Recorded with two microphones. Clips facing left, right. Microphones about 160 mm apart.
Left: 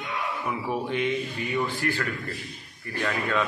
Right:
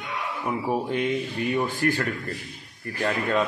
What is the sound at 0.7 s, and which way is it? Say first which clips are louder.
Speech: right 2 dB; 40° right (ahead or behind).